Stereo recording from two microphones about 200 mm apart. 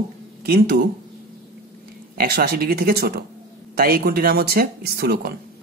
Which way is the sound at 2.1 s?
50° right (ahead or behind).